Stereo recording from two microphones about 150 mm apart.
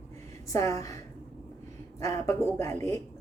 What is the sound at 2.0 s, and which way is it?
A woman's voice, 20° left (ahead or behind).